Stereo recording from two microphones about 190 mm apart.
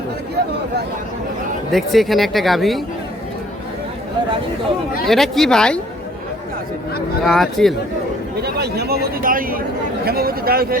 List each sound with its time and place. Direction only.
1.7 s speech: centre (ahead or behind)
5.0 s speech: centre (ahead or behind)
7.3 s speech: centre (ahead or behind)
8.4 s speech: 55° right (ahead or behind)